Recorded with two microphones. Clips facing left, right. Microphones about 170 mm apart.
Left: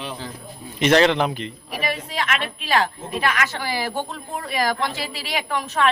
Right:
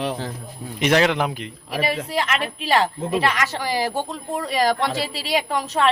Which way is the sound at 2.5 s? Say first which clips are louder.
Right 2 dB; 35° right (ahead or behind).